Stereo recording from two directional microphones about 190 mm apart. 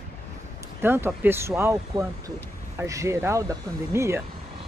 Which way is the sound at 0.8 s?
10° right (ahead or behind).